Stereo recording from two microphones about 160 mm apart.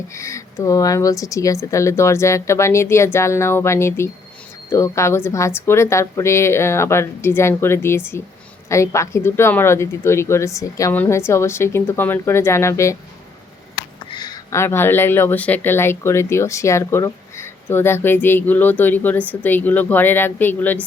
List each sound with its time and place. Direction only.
0.1 s speech: 20° left (ahead or behind)
14.1 s speech: 25° left (ahead or behind)